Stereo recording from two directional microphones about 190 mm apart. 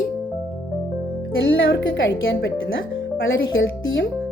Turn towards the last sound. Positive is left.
turn(degrees=90)